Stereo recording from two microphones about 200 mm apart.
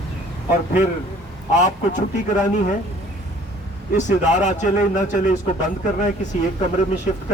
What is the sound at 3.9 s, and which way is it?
A man's voice, 35° left (ahead or behind).